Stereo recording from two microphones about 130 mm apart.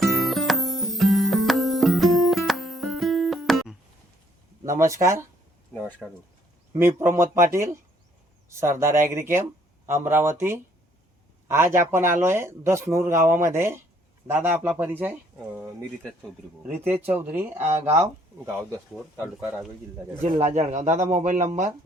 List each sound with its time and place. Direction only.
0.0 s music: centre (ahead or behind)
4.8 s speech: 25° right (ahead or behind)
6.0 s speech: centre (ahead or behind)
6.7 s speech: 20° right (ahead or behind)
17.1 s speech: 15° right (ahead or behind)
17.6 s speech: 55° right (ahead or behind)
20.2 s speech: 60° right (ahead or behind)